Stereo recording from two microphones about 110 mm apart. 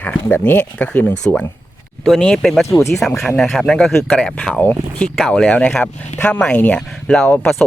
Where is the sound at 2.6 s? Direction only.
25° left (ahead or behind).